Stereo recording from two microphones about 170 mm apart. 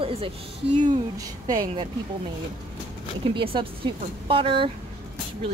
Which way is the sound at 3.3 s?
30° right (ahead or behind).